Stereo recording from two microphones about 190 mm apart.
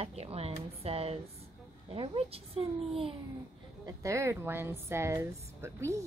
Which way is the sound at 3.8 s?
15° right (ahead or behind).